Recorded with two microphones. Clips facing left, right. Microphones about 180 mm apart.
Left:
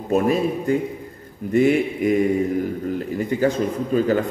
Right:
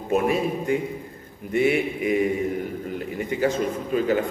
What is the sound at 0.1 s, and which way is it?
A man's voice, 40° left (ahead or behind).